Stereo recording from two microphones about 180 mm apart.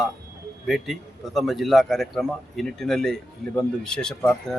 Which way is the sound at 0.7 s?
Centre (ahead or behind).